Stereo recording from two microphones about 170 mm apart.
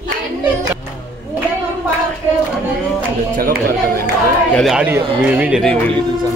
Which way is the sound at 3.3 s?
60° right (ahead or behind).